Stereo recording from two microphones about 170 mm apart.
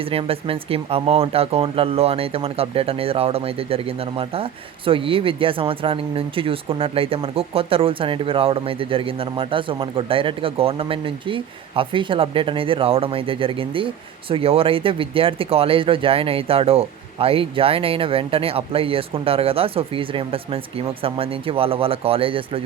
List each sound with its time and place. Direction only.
0.1 s speech: 35° right (ahead or behind)